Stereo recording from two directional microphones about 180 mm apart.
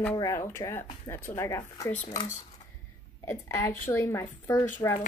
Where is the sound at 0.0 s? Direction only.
15° left (ahead or behind).